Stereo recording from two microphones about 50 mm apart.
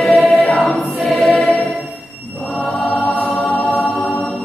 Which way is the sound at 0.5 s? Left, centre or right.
Centre.